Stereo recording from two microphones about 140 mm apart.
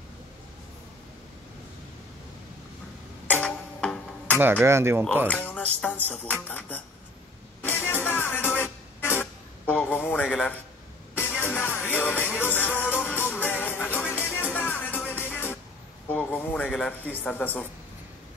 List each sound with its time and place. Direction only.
3.3 s music: 10° left (ahead or behind)
4.4 s speech: 15° right (ahead or behind)
5.3 s music: 10° left (ahead or behind)
5.8 s speech: 10° left (ahead or behind)
7.6 s music: 15° left (ahead or behind)
16.1 s speech: 10° left (ahead or behind)